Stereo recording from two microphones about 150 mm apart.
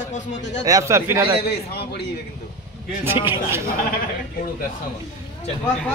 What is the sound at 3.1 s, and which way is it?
Speech, 15° right (ahead or behind).